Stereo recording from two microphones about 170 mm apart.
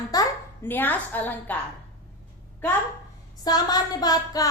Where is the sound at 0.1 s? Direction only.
15° left (ahead or behind).